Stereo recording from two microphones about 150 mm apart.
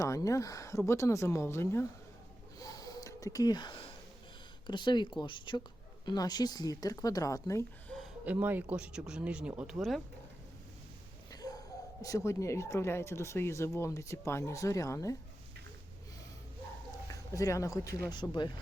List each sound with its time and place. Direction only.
0.0 s speech: 20° left (ahead or behind)
2.6 s sniff: 25° left (ahead or behind)
4.6 s speech: 30° left (ahead or behind)
8.2 s speech: 10° right (ahead or behind)
11.3 s a sound: 25° left (ahead or behind)
12.0 s speech: 20° left (ahead or behind)
17.1 s speech: 20° left (ahead or behind)